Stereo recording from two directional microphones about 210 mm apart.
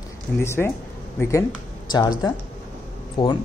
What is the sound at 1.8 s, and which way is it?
Speech, 20° left (ahead or behind).